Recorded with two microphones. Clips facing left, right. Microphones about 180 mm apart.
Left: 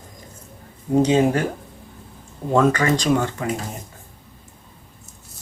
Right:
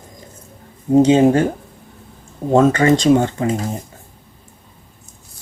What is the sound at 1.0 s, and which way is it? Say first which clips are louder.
Speech: right 5 dB; 25° right (ahead or behind).